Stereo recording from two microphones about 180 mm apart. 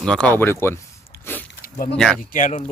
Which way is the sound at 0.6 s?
15° left (ahead or behind).